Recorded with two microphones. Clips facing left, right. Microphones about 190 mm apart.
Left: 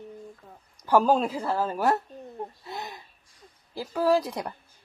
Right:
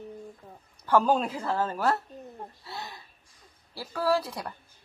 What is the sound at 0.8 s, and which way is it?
Speech, 10° left (ahead or behind).